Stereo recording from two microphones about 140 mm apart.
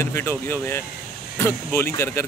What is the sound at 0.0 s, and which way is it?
Speech, 15° left (ahead or behind).